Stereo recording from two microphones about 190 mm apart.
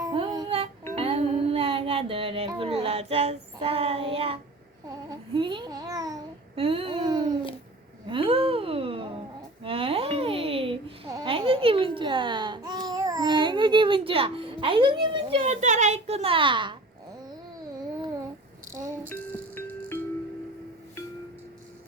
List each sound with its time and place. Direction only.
0.0 s music: 20° right (ahead or behind)
5.3 s babbling: 25° right (ahead or behind)
6.6 s babbling: 30° right (ahead or behind)
8.1 s a sound: 30° right (ahead or behind)
9.6 s babbling: 30° right (ahead or behind)
19.0 s music: 10° left (ahead or behind)